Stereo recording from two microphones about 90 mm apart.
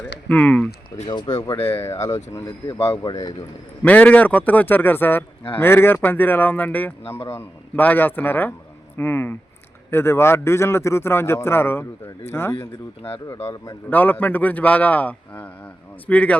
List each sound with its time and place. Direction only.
0.3 s a man's voice: 15° left (ahead or behind)
1.0 s speech: 50° left (ahead or behind)
1.5 s speech: 25° left (ahead or behind)
2.7 s speech: 90° left
3.0 s speech: 50° left (ahead or behind)
3.8 s speech: 15° left (ahead or behind); by 13.7 s 40° left (ahead or behind)
13.9 s a man's voice: 20° left (ahead or behind)